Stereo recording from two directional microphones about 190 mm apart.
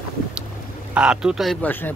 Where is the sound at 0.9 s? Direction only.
5° right (ahead or behind).